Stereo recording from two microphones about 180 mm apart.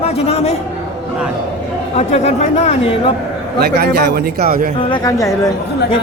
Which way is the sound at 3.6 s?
60° right (ahead or behind).